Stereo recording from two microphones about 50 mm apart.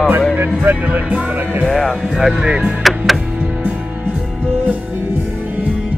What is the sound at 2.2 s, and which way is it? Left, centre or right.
Speech, centre.